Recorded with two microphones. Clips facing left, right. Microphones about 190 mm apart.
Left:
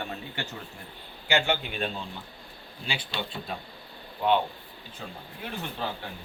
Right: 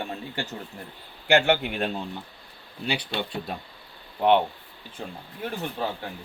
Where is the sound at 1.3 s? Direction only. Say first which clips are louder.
Right 6 dB; 65° right (ahead or behind).